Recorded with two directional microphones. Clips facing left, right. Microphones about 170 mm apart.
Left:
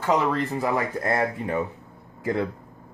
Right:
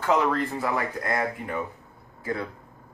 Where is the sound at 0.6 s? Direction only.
25° left (ahead or behind).